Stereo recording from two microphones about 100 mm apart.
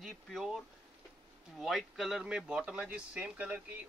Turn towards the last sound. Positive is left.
turn(degrees=-15)  # may be behind; listen again after turning